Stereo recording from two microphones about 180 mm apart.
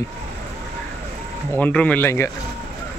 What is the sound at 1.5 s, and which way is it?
Speech, 10° left (ahead or behind).